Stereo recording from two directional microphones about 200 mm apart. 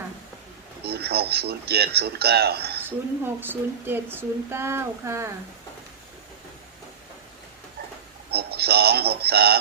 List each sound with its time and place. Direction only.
0.9 s speech: 55° right (ahead or behind)
3.2 s speech: 10° right (ahead or behind)
8.3 s speech: 55° right (ahead or behind)